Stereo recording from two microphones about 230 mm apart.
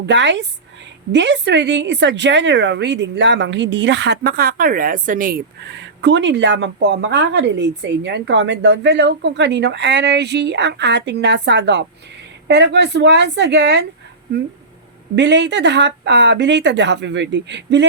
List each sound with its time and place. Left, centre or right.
0.0 s speech: right
5.8 s speech: right
15.1 s speech: right